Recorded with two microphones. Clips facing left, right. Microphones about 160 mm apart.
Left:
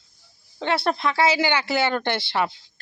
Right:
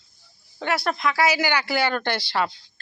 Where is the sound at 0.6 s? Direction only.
30° left (ahead or behind).